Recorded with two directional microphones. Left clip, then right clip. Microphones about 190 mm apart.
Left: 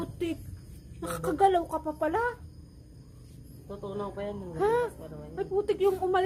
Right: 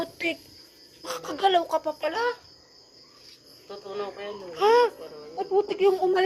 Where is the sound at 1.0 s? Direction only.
Centre (ahead or behind).